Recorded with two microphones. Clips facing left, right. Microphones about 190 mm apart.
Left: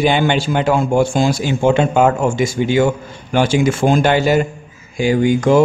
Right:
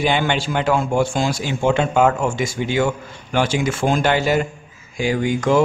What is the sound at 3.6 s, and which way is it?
A man's voice, 30° left (ahead or behind).